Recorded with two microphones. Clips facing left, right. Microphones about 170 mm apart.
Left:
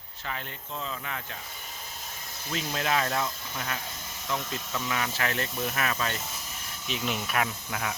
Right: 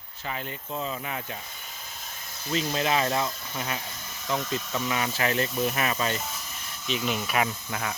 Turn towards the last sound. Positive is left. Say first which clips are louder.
# right 1 dB
turn(degrees=0)  # may be behind; listen again after turning